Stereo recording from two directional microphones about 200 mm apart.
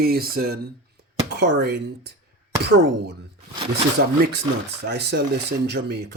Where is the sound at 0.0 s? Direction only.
50° right (ahead or behind).